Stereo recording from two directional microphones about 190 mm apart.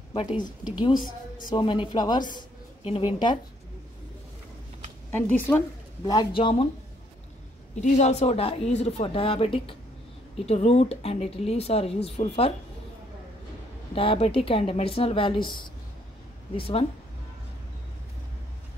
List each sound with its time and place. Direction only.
1.5 s speech: 25° left (ahead or behind)
5.1 s a woman's voice: 10° left (ahead or behind)
6.0 s speech: 25° left (ahead or behind)
7.8 s speech: 35° left (ahead or behind)
13.9 s speech: 30° left (ahead or behind)